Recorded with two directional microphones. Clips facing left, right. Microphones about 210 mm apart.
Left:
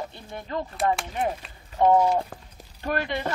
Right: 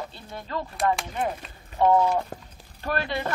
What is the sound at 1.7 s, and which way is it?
A child's voice, 15° left (ahead or behind).